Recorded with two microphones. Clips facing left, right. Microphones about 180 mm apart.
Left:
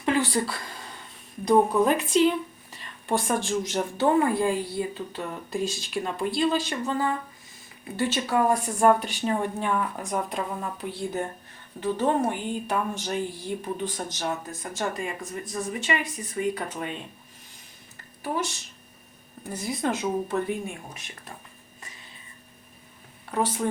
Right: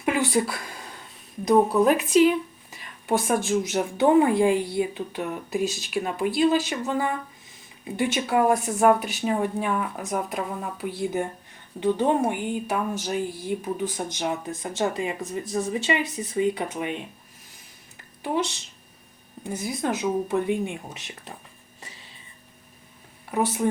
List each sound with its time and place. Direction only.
0.0 s a sound: 10° right (ahead or behind)
1.5 s a woman's voice: 5° right (ahead or behind)
19.6 s a woman's voice: centre (ahead or behind)
20.3 s a woman's voice: 20° right (ahead or behind)
23.3 s speech: 10° right (ahead or behind)